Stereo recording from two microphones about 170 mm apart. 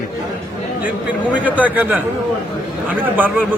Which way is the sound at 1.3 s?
10° right (ahead or behind).